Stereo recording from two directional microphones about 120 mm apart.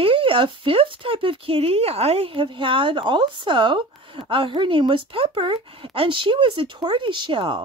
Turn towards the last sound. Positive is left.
turn(degrees=-45)  # may be behind; listen again after turning